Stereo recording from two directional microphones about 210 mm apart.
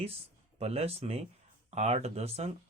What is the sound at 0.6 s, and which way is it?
Speech, 30° right (ahead or behind).